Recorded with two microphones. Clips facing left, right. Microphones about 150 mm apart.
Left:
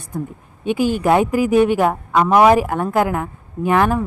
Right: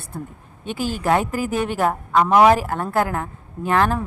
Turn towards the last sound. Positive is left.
turn(degrees=10)  # may be behind; listen again after turning